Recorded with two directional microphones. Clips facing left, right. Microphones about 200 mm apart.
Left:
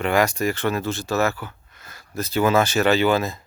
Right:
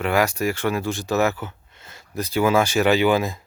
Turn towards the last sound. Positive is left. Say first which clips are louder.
# right 1 dB
turn(degrees=-15)  # may be behind; listen again after turning